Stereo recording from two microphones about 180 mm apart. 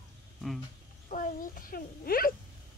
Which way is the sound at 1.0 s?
50° left (ahead or behind).